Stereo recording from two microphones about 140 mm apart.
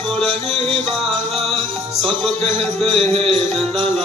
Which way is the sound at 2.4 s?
45° right (ahead or behind).